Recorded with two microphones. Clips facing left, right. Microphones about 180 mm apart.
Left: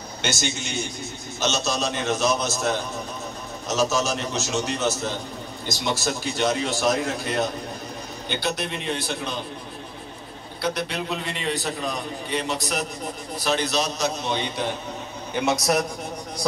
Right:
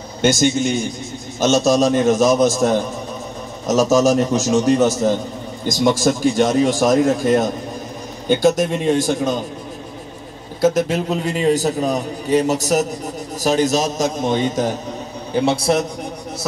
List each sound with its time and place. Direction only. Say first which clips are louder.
0.2 s a man's voice: right 13 dB; 50° right (ahead or behind)
3.6 s a man's voice: right 9 dB; 45° right (ahead or behind)
10.6 s a man's voice: right 11 dB; 45° right (ahead or behind)
15.3 s a man's voice: right 5 dB; 30° right (ahead or behind)